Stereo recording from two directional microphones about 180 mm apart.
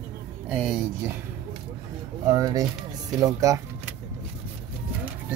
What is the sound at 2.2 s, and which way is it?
Speech, 20° right (ahead or behind).